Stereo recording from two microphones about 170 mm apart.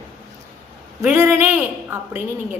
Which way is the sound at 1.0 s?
10° right (ahead or behind).